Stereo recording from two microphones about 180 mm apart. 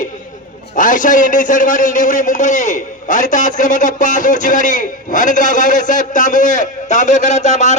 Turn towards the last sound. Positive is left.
turn(degrees=40)  # may be behind; listen again after turning